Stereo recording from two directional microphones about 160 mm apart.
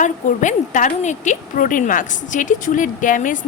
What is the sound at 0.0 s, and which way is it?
Speech, 50° left (ahead or behind).